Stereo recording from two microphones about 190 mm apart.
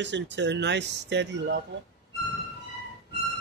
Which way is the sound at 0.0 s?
65° right (ahead or behind).